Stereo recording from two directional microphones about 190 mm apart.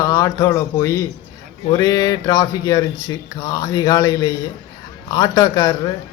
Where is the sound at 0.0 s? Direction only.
15° left (ahead or behind).